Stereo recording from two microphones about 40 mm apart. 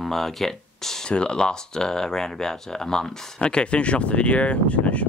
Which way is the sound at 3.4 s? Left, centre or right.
Left.